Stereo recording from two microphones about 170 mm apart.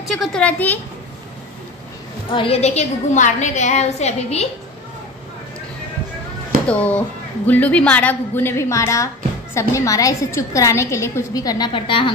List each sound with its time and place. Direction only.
0.0 s a woman's voice: centre (ahead or behind)
2.3 s a woman's voice: 35° left (ahead or behind)
6.7 s a woman's voice: 10° left (ahead or behind); by 12.1 s 30° left (ahead or behind)